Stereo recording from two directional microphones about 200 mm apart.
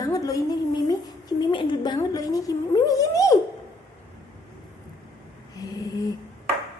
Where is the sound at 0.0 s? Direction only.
15° left (ahead or behind).